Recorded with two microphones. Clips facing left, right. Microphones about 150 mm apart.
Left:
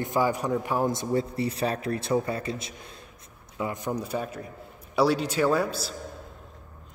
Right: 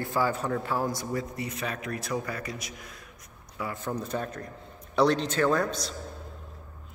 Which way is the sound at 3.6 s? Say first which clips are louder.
Left 3 dB; 15° left (ahead or behind).